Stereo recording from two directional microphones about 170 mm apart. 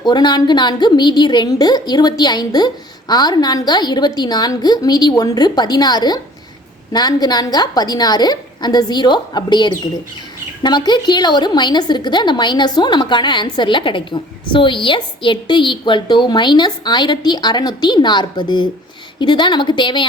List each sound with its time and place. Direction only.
0.0 s a woman's voice: 25° left (ahead or behind)